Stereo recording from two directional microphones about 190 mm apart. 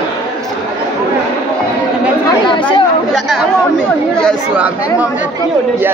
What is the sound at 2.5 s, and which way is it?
Chatter, 25° left (ahead or behind).